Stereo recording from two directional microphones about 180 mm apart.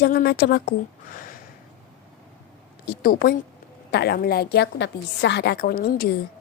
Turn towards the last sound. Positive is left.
turn(degrees=60)  # may be behind; listen again after turning